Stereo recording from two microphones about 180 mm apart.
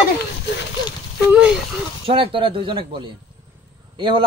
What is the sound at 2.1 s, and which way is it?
Speech, 30° right (ahead or behind).